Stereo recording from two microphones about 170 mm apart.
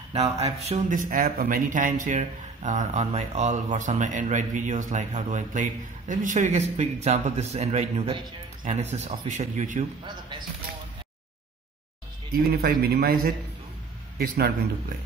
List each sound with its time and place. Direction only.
0.1 s speech: 40° right (ahead or behind)
9.2 s speech: 45° right (ahead or behind)
12.3 s speech: 65° right (ahead or behind)